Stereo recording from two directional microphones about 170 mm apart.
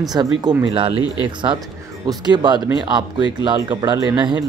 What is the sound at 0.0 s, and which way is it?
Speech, 25° right (ahead or behind).